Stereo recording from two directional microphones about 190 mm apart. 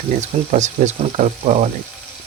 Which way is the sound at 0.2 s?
40° right (ahead or behind).